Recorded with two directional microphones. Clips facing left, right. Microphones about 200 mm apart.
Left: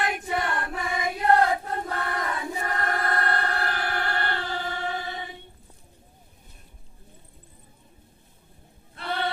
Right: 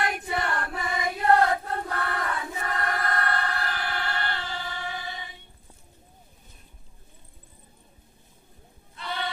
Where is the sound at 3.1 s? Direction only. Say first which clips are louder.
Left 2 dB; 40° left (ahead or behind).